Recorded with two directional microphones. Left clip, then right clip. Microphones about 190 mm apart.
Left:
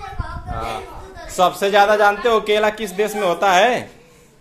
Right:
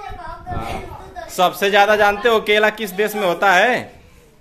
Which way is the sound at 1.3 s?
15° right (ahead or behind).